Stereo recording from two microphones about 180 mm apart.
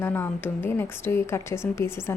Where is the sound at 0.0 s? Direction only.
10° left (ahead or behind).